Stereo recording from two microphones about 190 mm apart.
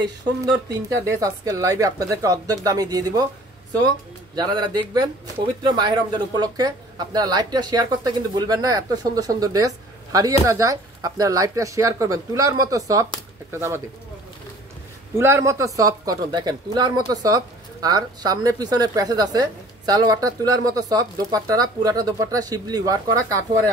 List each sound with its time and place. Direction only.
0.8 s speech: 15° right (ahead or behind)
4.4 s speech: 20° right (ahead or behind)
15.1 s speech: 15° right (ahead or behind)